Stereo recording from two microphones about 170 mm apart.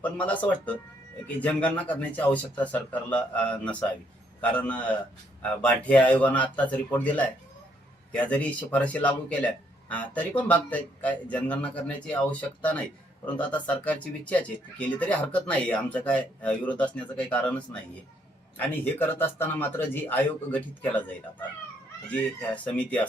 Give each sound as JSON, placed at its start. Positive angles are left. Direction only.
{"t": 0.0, "sound": "speech", "side_deg": 10}